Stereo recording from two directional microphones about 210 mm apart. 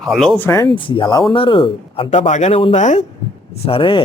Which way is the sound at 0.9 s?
25° left (ahead or behind).